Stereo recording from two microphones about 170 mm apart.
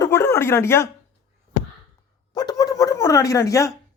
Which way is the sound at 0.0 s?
15° left (ahead or behind).